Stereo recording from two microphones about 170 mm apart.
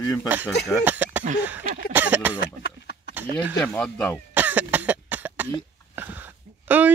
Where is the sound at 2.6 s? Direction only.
75° left (ahead or behind).